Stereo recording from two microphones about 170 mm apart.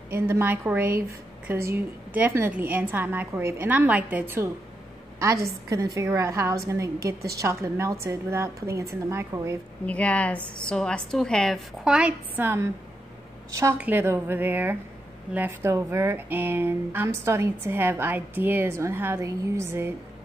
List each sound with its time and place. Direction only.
0.1 s speech: 15° right (ahead or behind)
5.9 s speech: 20° right (ahead or behind)
9.8 s a woman's voice: 10° left (ahead or behind); by 19.9 s 15° right (ahead or behind)